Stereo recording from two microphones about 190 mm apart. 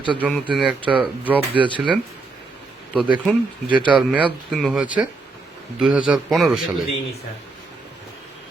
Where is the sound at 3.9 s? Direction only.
5° right (ahead or behind).